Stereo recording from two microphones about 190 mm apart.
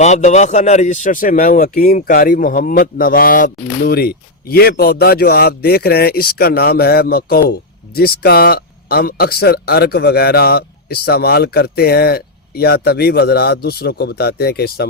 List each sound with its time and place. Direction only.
0.0 s speech: 35° left (ahead or behind); by 14.8 s 55° left (ahead or behind)